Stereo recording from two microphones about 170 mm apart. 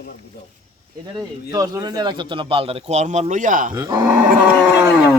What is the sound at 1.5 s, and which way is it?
Speech, 20° right (ahead or behind).